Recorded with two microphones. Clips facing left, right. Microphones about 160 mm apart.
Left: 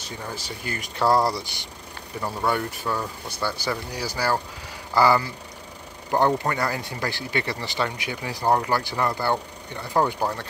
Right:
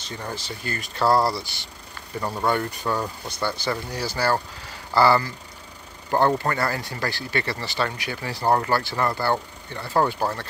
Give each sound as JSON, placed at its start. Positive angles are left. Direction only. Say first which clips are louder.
{"t": 0.0, "sound": "speech", "louder": "right 1 dB", "side_deg": 10}
{"t": 2.2, "sound": "speech", "louder": "right 1 dB", "side_deg": 5}